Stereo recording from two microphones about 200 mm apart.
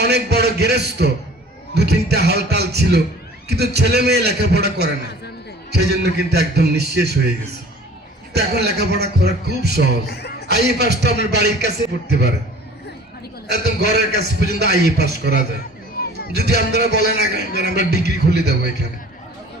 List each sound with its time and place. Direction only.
0.0 s a man's voice: 55° right (ahead or behind)
8.3 s a man's voice: 55° right (ahead or behind)
10.1 s speech: 55° left (ahead or behind)
10.5 s a man's voice: 55° right (ahead or behind)
13.5 s a man's voice: 55° right (ahead or behind)